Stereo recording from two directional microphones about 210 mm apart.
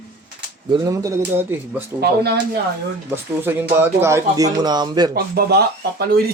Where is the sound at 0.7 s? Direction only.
15° right (ahead or behind).